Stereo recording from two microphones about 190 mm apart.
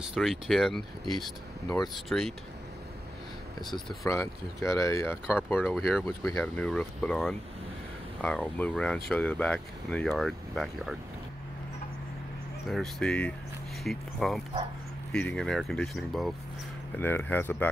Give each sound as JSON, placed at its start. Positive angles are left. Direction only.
{"t": 0.0, "sound": "speech", "side_deg": 0}
{"t": 3.5, "sound": "speech", "side_deg": 20}
{"t": 5.1, "sound": "speech", "side_deg": -5}
{"t": 12.6, "sound": "speech", "side_deg": 0}
{"t": 16.9, "sound": "speech", "side_deg": 10}